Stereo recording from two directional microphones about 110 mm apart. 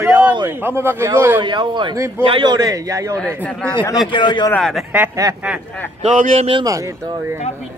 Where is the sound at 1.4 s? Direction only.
45° right (ahead or behind).